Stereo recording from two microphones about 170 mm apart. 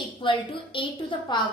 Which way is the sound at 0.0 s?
30° left (ahead or behind).